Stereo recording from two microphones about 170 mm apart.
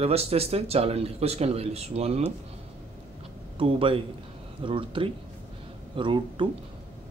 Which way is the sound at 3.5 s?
30° right (ahead or behind).